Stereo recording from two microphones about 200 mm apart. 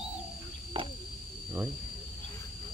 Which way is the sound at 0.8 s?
25° right (ahead or behind).